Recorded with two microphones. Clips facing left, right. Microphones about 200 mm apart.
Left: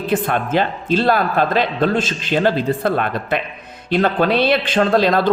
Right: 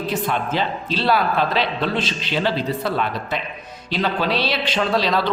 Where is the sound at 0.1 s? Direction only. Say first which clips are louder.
Left 6 dB; 55° left (ahead or behind).